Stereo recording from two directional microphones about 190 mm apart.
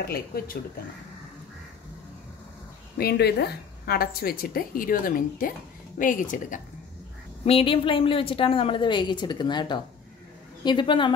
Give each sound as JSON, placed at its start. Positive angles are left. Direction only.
{"t": 0.0, "sound": "speech", "side_deg": 55}
{"t": 3.0, "sound": "a woman's voice", "side_deg": 60}
{"t": 7.4, "sound": "a woman's voice", "side_deg": 30}